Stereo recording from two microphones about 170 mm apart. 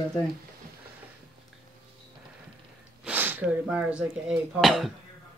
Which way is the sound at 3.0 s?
10° right (ahead or behind).